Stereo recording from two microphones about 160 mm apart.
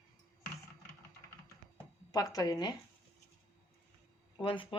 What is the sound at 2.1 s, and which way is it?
Speech, 25° left (ahead or behind).